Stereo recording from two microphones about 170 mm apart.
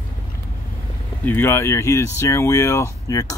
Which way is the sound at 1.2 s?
10° left (ahead or behind).